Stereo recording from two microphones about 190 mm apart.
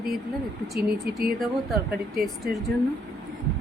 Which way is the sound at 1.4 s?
Centre (ahead or behind).